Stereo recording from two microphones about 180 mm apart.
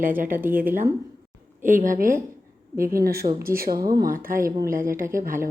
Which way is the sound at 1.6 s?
50° right (ahead or behind).